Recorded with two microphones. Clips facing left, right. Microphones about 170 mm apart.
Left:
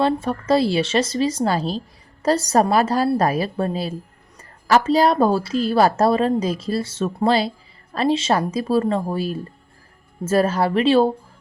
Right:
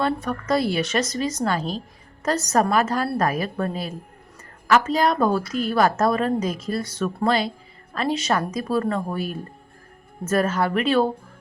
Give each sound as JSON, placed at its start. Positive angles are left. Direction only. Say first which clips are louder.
{"t": 0.0, "sound": "a woman's voice", "louder": "left 4 dB", "side_deg": 30}